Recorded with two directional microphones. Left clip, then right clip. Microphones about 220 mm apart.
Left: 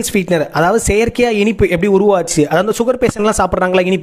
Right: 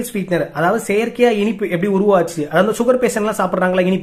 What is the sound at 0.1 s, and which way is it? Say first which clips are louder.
Speech: left 6 dB; 45° left (ahead or behind).